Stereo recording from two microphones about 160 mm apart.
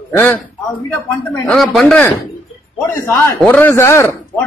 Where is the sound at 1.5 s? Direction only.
Centre (ahead or behind).